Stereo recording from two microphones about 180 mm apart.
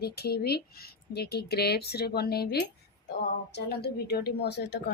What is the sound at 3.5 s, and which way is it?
Speech, 65° left (ahead or behind).